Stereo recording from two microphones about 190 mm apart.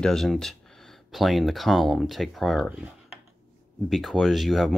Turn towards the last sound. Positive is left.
turn(degrees=0)  # may be behind; listen again after turning